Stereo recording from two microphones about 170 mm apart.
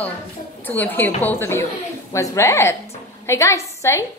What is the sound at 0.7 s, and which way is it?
A woman's voice, 10° left (ahead or behind).